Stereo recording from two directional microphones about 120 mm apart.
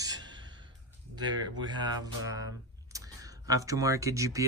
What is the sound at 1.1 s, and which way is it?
Speech, 40° right (ahead or behind).